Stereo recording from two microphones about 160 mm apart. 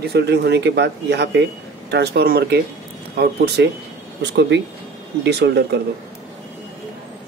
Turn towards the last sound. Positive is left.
turn(degrees=-90)